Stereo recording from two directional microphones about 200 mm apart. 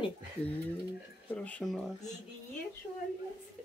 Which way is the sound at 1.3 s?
5° left (ahead or behind).